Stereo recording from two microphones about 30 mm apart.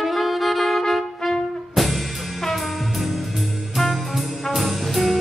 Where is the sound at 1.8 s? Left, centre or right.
Centre.